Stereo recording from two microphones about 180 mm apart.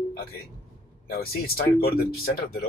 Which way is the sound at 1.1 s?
55° left (ahead or behind).